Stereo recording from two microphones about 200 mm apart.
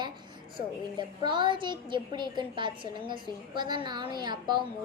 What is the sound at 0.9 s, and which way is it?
A child's voice, 25° right (ahead or behind).